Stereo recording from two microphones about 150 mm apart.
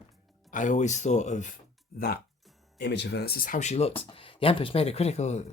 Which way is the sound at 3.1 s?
90° left.